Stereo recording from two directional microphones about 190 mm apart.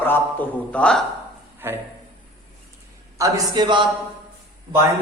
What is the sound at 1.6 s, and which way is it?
Speech, 10° right (ahead or behind).